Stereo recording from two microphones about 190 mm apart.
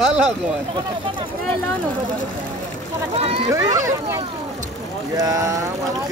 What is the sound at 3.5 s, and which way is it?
Speech, 20° right (ahead or behind).